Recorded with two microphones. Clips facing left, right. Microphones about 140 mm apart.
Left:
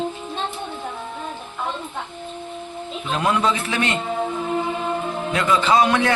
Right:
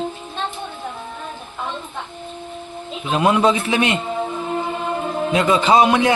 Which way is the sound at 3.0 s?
15° right (ahead or behind).